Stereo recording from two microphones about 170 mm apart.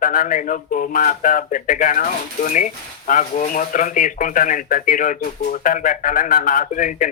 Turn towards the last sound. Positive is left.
turn(degrees=50)  # may be behind; listen again after turning